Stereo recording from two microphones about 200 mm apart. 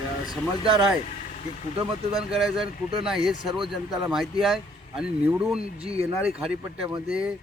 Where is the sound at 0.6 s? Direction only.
25° right (ahead or behind).